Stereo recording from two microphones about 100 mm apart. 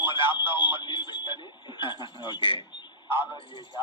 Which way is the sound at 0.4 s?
55° left (ahead or behind).